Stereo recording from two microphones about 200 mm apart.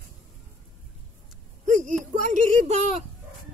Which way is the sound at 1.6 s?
40° right (ahead or behind).